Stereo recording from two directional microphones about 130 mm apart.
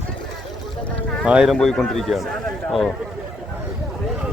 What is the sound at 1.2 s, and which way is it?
Speech, 5° right (ahead or behind).